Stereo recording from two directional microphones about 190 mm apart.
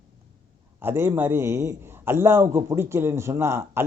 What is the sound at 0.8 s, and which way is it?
A man's voice, 10° right (ahead or behind).